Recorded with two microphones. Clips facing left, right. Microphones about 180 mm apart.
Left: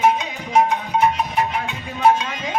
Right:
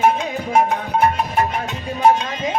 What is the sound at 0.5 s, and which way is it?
Music, 50° right (ahead or behind).